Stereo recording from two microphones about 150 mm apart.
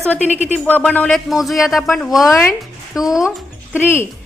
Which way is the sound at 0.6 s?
10° left (ahead or behind).